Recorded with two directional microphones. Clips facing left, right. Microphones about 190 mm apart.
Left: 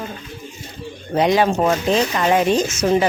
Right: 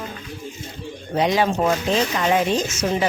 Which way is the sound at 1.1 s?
55° left (ahead or behind).